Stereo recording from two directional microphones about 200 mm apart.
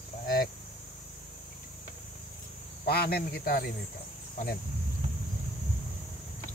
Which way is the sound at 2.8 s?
50° left (ahead or behind).